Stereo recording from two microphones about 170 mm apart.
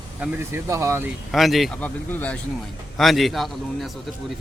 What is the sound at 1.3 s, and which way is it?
Speech, centre (ahead or behind).